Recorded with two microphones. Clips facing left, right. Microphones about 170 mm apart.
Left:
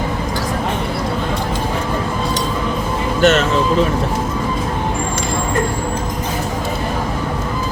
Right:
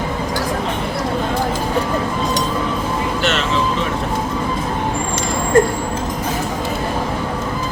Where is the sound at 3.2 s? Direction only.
45° left (ahead or behind).